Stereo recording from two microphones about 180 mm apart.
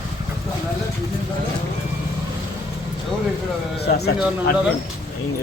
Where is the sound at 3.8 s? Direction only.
65° left (ahead or behind).